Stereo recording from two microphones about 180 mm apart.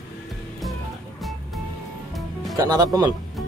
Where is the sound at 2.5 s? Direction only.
20° right (ahead or behind).